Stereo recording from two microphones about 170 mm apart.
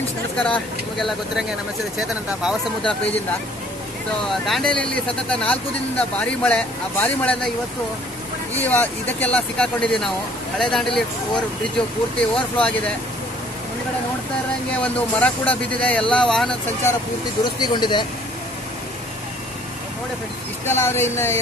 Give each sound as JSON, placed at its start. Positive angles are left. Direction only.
{"t": 0.4, "sound": "speech", "side_deg": 5}
{"t": 4.3, "sound": "speech", "side_deg": 0}
{"t": 8.5, "sound": "speech", "side_deg": 10}
{"t": 12.2, "sound": "speech", "side_deg": 5}
{"t": 14.8, "sound": "speech", "side_deg": 10}
{"t": 17.6, "sound": "speech", "side_deg": 25}
{"t": 20.6, "sound": "speech", "side_deg": 15}